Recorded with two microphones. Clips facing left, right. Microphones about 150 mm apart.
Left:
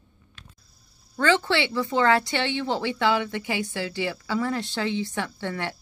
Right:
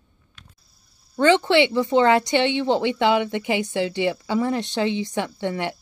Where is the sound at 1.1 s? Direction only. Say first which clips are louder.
Right 6 dB; 20° right (ahead or behind).